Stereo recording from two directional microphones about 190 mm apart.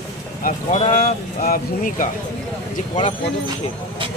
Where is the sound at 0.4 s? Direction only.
45° left (ahead or behind).